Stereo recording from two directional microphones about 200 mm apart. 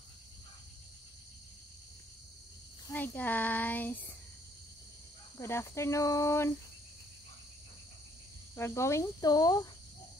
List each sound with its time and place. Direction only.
2.9 s child singing: 10° left (ahead or behind)
5.4 s child singing: 10° left (ahead or behind)
8.5 s child singing: 15° left (ahead or behind)